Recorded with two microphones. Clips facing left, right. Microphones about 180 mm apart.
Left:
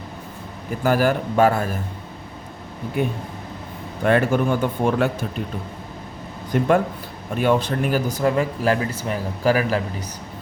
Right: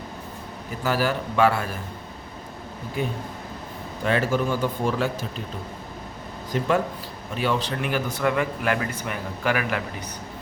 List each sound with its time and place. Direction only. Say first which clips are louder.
0.9 s a man's voice: left 5 dB; 50° left (ahead or behind)
4.0 s a man's voice: left 5 dB; 55° left (ahead or behind)
6.5 s a man's voice: left 5 dB; 55° left (ahead or behind); by 9.8 s 35° left (ahead or behind)